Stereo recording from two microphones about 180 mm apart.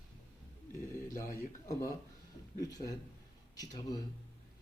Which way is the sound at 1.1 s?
50° left (ahead or behind).